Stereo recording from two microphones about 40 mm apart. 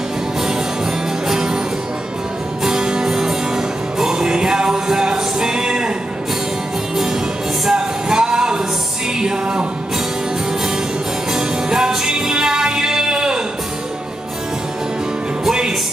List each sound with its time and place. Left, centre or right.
1.2 s music: centre
2.6 s music: centre
7.6 s music: centre
11.3 s music: centre